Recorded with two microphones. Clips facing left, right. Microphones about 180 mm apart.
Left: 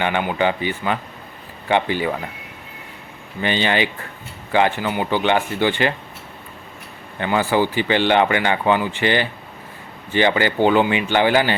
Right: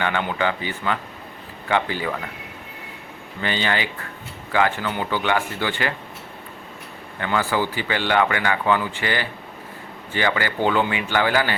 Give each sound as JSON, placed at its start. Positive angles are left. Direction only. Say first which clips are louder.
{"t": 0.0, "sound": "speech", "louder": "left 3 dB", "side_deg": 15}
{"t": 3.4, "sound": "speech", "louder": "left 4 dB", "side_deg": 20}
{"t": 7.2, "sound": "speech", "louder": "left 4 dB", "side_deg": 20}